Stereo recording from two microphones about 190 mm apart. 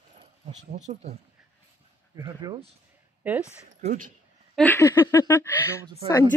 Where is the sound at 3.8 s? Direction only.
45° right (ahead or behind).